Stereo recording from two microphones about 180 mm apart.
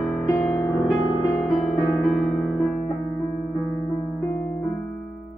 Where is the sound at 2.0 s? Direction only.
5° right (ahead or behind).